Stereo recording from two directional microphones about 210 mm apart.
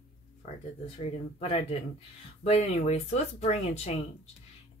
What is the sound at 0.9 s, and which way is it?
Speech, 30° left (ahead or behind).